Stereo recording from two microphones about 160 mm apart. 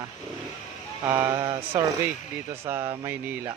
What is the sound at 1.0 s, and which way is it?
Speech, 15° right (ahead or behind).